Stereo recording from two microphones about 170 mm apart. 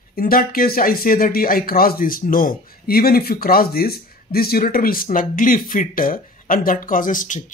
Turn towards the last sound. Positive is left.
turn(degrees=50)  # may be behind; listen again after turning